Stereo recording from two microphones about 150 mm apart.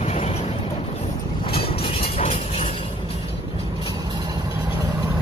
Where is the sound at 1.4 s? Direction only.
40° left (ahead or behind).